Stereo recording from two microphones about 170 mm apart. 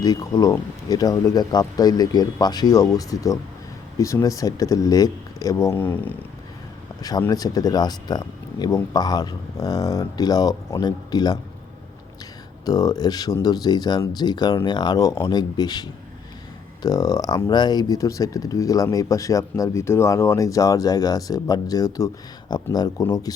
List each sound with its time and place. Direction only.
0.0 s speech: 20° left (ahead or behind)
7.0 s speech: 20° left (ahead or behind)
12.6 s speech: 20° left (ahead or behind)